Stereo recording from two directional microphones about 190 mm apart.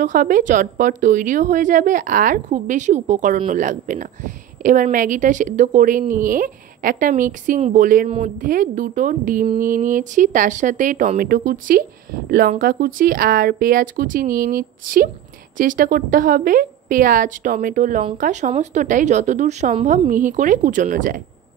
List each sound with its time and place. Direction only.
0.0 s a woman's voice: 45° right (ahead or behind)